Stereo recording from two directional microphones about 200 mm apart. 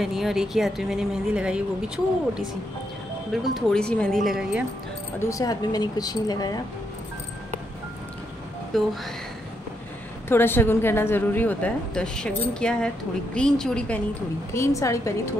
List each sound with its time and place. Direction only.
0.0 s a woman's voice: centre (ahead or behind)
3.5 s a woman's voice: 5° left (ahead or behind)
5.2 s speech: 15° left (ahead or behind)
8.7 s a woman's voice: centre (ahead or behind)
10.2 s a woman's voice: 10° left (ahead or behind)